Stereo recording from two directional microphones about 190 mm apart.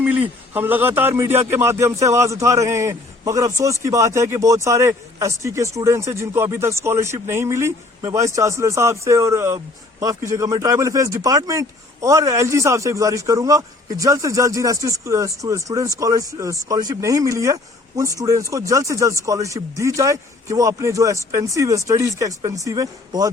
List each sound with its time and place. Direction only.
0.0 s a man's voice: 10° right (ahead or behind)